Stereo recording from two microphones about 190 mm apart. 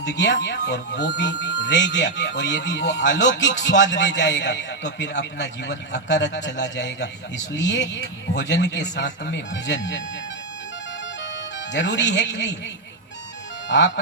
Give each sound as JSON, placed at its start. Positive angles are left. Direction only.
{"t": 0.1, "sound": "speech", "side_deg": 70}
{"t": 11.7, "sound": "speech", "side_deg": 70}
{"t": 13.7, "sound": "speech", "side_deg": 75}